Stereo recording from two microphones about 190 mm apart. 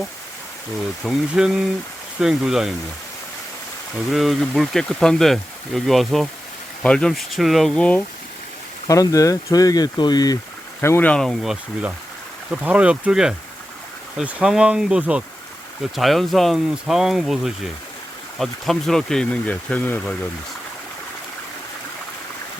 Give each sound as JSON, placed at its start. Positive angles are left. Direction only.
{"t": 1.0, "sound": "speech", "side_deg": -5}
{"t": 4.1, "sound": "speech", "side_deg": 0}
{"t": 8.9, "sound": "speech", "side_deg": 15}